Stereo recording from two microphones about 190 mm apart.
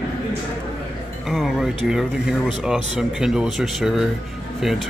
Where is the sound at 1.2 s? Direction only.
Centre (ahead or behind).